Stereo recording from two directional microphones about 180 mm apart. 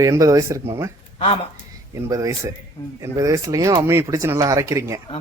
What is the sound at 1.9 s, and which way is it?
Speech, 20° right (ahead or behind).